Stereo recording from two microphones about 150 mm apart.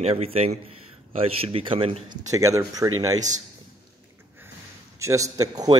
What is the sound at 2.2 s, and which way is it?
Speech, 20° right (ahead or behind).